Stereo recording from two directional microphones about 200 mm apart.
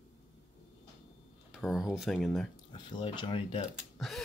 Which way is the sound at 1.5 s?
Centre (ahead or behind).